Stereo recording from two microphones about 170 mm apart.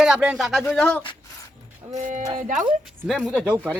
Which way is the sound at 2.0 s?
45° right (ahead or behind).